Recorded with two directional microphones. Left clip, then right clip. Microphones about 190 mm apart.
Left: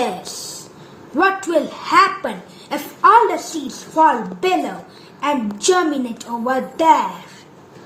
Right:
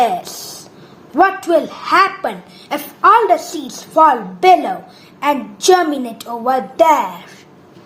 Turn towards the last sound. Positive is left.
turn(degrees=-50)  # may be behind; listen again after turning